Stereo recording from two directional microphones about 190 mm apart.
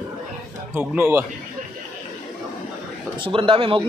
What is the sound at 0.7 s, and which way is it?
Speech, 10° right (ahead or behind).